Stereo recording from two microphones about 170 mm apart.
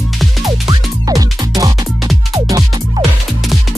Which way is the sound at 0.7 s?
20° right (ahead or behind).